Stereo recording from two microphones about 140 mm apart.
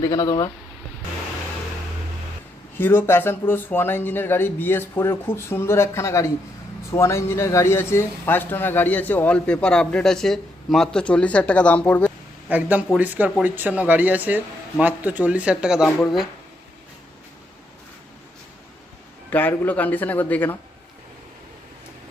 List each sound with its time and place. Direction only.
0.0 s speech: 25° left (ahead or behind)
2.7 s speech: 15° left (ahead or behind)
12.5 s speech: 10° right (ahead or behind)
19.3 s speech: 15° left (ahead or behind)